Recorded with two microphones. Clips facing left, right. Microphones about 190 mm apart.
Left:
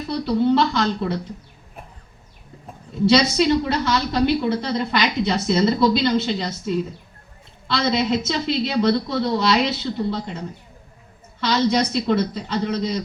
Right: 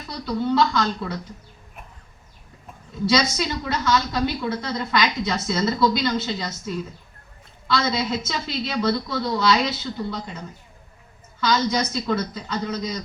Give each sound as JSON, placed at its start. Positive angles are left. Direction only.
{"t": 0.3, "sound": "a woman's voice", "side_deg": 25}
{"t": 3.2, "sound": "a woman's voice", "side_deg": 25}